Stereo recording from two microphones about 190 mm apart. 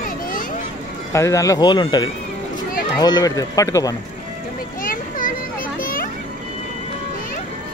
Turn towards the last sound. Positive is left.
turn(degrees=50)  # may be behind; listen again after turning